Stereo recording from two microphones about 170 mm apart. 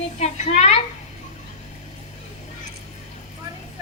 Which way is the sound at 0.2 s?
40° left (ahead or behind).